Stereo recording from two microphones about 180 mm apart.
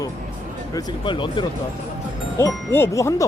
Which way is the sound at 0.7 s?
20° left (ahead or behind).